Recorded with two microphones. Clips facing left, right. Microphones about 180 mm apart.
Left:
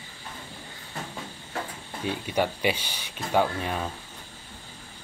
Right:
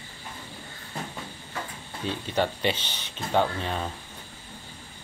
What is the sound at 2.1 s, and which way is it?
Speech, 10° left (ahead or behind).